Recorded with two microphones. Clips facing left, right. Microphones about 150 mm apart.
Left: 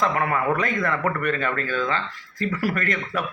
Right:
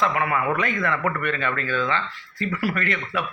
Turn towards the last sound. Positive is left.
turn(degrees=40)  # may be behind; listen again after turning